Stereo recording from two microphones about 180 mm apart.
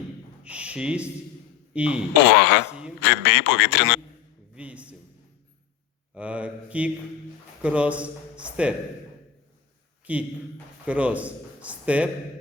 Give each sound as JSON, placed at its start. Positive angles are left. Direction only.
{"t": 0.4, "sound": "speech", "side_deg": -5}
{"t": 2.2, "sound": "a man's voice", "side_deg": 80}
{"t": 4.5, "sound": "a sound", "side_deg": -5}
{"t": 6.1, "sound": "mantra", "side_deg": -5}
{"t": 7.6, "sound": "speech", "side_deg": -5}
{"t": 10.1, "sound": "mantra", "side_deg": -10}
{"t": 10.8, "sound": "a man's voice", "side_deg": -5}